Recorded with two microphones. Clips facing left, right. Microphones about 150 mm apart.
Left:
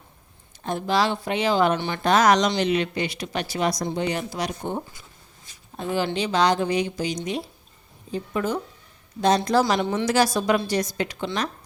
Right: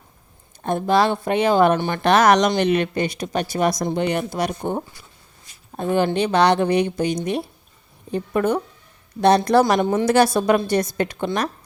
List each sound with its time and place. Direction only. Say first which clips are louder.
0.6 s a woman's voice: right 5 dB; 55° right (ahead or behind)